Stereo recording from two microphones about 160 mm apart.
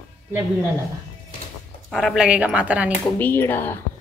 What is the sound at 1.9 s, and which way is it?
Speech, centre (ahead or behind).